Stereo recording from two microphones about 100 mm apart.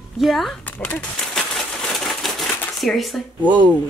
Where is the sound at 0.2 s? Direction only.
Centre (ahead or behind).